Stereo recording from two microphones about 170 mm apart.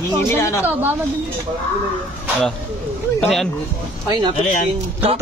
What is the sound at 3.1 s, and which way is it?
Speech, 5° left (ahead or behind).